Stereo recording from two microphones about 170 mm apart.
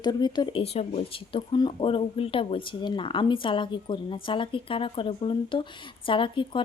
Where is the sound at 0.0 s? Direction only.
25° left (ahead or behind).